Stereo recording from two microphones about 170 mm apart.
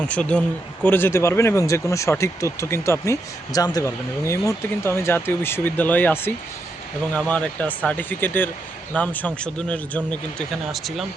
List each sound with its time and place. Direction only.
0.0 s speech: 10° left (ahead or behind)